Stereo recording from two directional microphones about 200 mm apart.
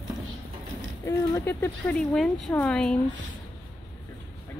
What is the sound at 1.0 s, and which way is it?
Speech, 10° left (ahead or behind).